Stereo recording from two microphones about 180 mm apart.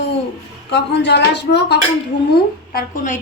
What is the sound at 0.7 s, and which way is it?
Speech, 75° left (ahead or behind).